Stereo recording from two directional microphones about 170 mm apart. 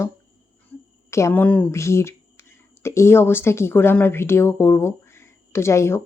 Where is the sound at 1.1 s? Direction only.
15° left (ahead or behind).